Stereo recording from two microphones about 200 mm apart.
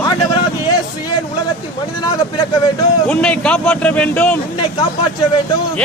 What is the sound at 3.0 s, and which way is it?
A man's voice, 5° left (ahead or behind).